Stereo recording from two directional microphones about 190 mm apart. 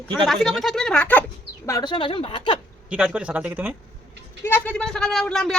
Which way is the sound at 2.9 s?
5° right (ahead or behind).